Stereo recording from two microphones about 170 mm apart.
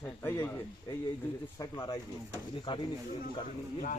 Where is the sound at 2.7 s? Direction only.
30° left (ahead or behind).